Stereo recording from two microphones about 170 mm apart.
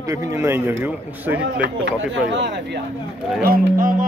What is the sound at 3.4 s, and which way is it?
Speech, 60° right (ahead or behind).